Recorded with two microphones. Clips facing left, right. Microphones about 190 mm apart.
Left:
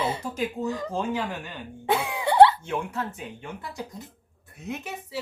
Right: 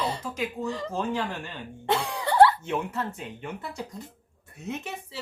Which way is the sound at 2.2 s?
15° left (ahead or behind).